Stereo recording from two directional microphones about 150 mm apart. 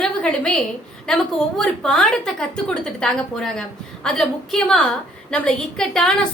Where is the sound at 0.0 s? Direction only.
5° left (ahead or behind).